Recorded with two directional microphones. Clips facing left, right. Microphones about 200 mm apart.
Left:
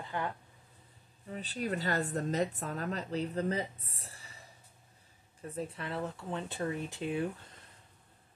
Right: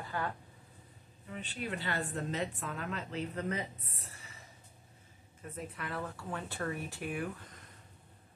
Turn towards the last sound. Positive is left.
turn(degrees=25)  # may be behind; listen again after turning